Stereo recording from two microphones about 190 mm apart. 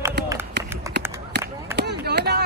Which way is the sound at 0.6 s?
60° right (ahead or behind).